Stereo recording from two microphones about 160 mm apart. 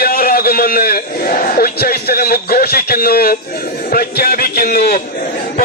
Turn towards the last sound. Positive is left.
turn(degrees=70)  # may be behind; listen again after turning